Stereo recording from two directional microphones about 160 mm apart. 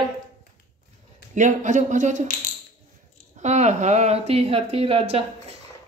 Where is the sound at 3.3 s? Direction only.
45° right (ahead or behind).